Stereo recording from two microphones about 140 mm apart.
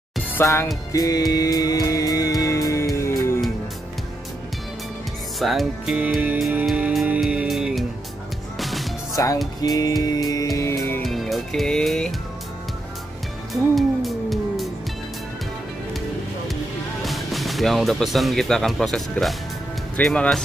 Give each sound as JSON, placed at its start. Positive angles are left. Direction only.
{"t": 0.3, "sound": "music", "side_deg": 15}
{"t": 5.4, "sound": "music", "side_deg": 0}
{"t": 9.1, "sound": "speech", "side_deg": 25}
{"t": 9.6, "sound": "music", "side_deg": 25}
{"t": 11.0, "sound": "music", "side_deg": 0}
{"t": 13.5, "sound": "music", "side_deg": 0}
{"t": 17.0, "sound": "speech", "side_deg": 0}